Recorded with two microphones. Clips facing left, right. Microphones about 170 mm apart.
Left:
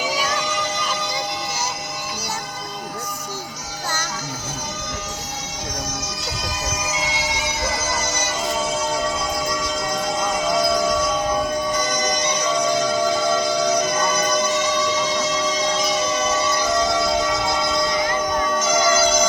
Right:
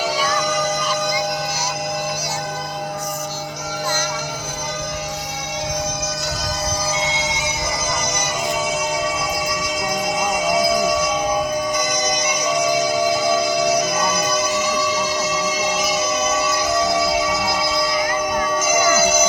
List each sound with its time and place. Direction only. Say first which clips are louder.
7.0 s bagpipes: right 2 dB; 25° right (ahead or behind)
9.5 s music: right 1 dB; 10° right (ahead or behind)